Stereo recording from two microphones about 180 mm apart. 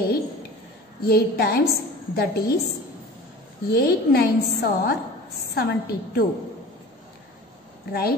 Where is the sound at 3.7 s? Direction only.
60° left (ahead or behind).